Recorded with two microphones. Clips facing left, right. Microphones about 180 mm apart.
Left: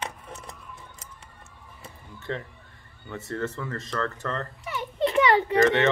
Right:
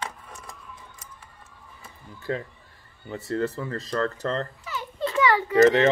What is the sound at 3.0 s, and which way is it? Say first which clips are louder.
Speech: right 4 dB; 35° right (ahead or behind).